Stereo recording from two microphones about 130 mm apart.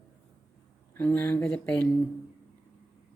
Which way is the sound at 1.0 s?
15° left (ahead or behind).